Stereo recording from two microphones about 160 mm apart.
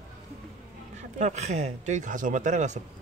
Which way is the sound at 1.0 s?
50° right (ahead or behind).